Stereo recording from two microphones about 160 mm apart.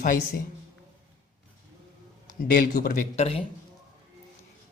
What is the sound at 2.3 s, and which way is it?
Speech, 70° left (ahead or behind).